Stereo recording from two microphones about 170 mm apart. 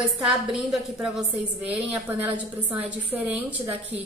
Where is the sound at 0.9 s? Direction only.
5° right (ahead or behind).